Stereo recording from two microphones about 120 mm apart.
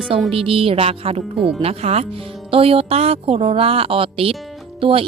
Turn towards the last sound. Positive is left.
turn(degrees=-50)  # may be behind; listen again after turning